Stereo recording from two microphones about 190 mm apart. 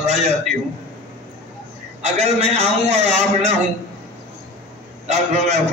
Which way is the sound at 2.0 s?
35° right (ahead or behind).